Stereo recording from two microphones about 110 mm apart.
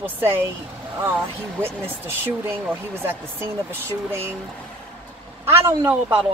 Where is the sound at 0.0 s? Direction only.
20° right (ahead or behind).